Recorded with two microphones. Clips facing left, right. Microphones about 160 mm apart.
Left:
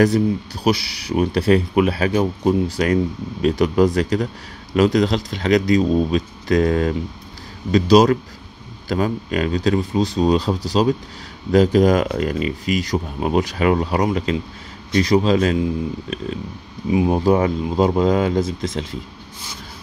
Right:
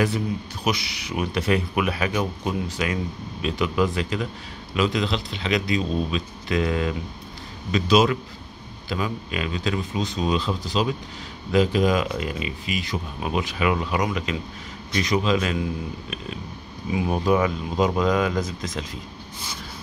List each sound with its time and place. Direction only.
0.7 s speech: 35° left (ahead or behind)
16.9 s speech: 25° left (ahead or behind)